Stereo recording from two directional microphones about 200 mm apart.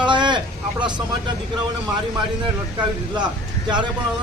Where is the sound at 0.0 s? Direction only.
20° right (ahead or behind).